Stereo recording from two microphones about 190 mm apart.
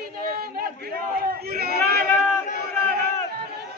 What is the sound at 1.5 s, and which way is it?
Chatter, 55° right (ahead or behind).